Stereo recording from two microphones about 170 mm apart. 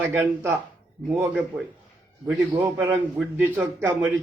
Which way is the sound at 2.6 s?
10° right (ahead or behind).